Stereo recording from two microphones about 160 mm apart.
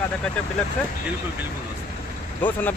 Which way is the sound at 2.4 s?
10° left (ahead or behind).